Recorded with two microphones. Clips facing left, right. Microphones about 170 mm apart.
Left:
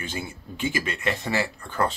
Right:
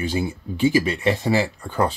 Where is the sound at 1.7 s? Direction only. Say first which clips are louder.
Right 2 dB; 15° right (ahead or behind).